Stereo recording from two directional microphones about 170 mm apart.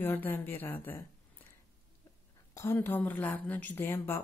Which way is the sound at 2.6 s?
15° left (ahead or behind).